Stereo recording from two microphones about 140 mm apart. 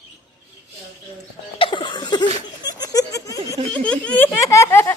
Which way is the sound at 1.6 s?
35° left (ahead or behind).